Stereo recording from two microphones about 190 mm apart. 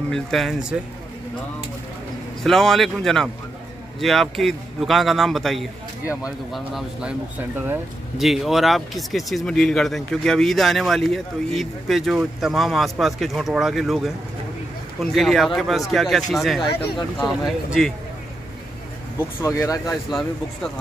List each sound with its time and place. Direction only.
0.1 s speech: centre (ahead or behind)
2.4 s speech: centre (ahead or behind)
19.1 s speech: 15° left (ahead or behind)
20.1 s speech: centre (ahead or behind)